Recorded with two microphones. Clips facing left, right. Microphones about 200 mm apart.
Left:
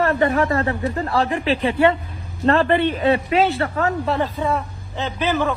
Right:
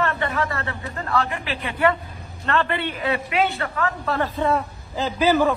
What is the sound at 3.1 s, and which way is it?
Speech, 30° left (ahead or behind).